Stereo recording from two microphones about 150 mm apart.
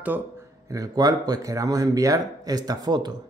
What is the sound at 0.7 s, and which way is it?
Speech, 25° right (ahead or behind).